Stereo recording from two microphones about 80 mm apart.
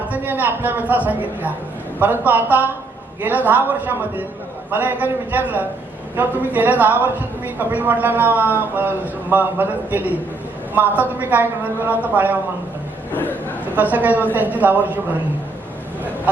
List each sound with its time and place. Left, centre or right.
0.1 s a man's voice: right
13.7 s a man's voice: right